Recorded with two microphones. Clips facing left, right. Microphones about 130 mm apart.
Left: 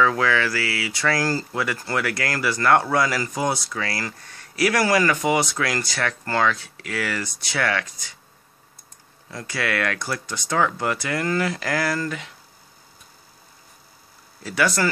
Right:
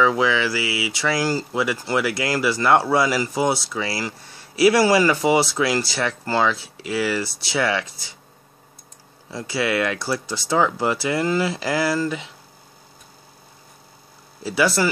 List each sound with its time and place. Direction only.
0.0 s speech: 20° right (ahead or behind)
0.5 s speech: 5° right (ahead or behind)
1.1 s speech: 25° right (ahead or behind)
9.3 s speech: 25° right (ahead or behind)
14.4 s speech: 25° right (ahead or behind)